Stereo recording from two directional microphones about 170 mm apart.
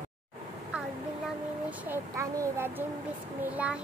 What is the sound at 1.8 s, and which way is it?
Child singing, 15° right (ahead or behind).